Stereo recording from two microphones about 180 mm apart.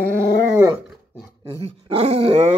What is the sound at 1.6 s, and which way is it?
Dog, 35° right (ahead or behind).